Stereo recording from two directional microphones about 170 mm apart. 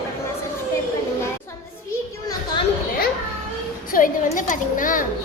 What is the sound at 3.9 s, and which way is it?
A woman's voice, 50° left (ahead or behind).